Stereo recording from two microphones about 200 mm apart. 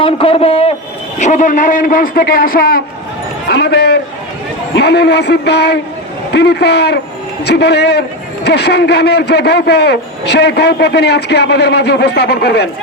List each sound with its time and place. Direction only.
0.0 s a man's voice: 30° left (ahead or behind); by 12.6 s 55° left (ahead or behind)